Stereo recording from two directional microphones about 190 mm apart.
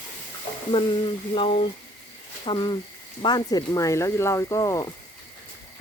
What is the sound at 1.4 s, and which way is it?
Speech, 30° left (ahead or behind).